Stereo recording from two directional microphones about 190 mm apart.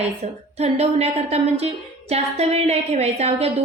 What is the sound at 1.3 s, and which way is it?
A woman's voice, 35° right (ahead or behind).